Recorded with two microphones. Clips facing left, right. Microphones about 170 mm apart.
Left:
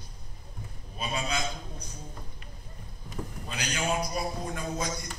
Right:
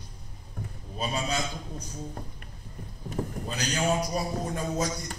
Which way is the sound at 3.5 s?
40° right (ahead or behind).